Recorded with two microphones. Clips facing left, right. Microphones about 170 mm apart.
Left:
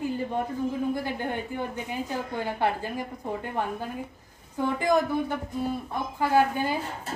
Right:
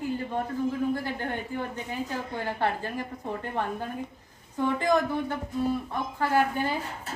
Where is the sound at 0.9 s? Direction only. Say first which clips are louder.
Left 1 dB; 10° left (ahead or behind).